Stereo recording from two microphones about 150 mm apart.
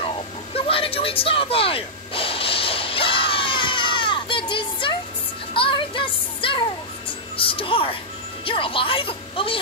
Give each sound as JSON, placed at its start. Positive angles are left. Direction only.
{"t": 0.7, "sound": "a sound", "side_deg": 40}
{"t": 5.5, "sound": "music", "side_deg": 35}
{"t": 8.5, "sound": "a woman's voice", "side_deg": 35}